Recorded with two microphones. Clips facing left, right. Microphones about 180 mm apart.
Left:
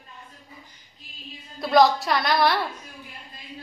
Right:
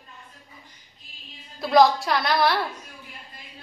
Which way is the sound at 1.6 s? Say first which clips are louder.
Right 1 dB; centre (ahead or behind).